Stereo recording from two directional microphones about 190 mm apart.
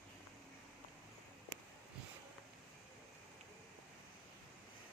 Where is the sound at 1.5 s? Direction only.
60° right (ahead or behind).